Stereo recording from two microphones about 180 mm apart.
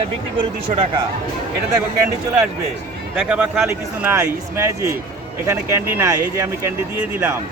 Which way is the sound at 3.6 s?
15° right (ahead or behind).